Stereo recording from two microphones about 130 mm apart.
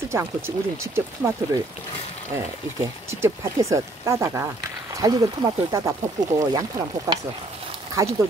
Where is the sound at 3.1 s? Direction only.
20° right (ahead or behind).